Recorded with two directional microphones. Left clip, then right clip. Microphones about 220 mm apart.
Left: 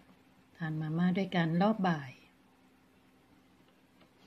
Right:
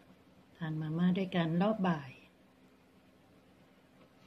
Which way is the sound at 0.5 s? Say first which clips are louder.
Left 2 dB; 30° left (ahead or behind).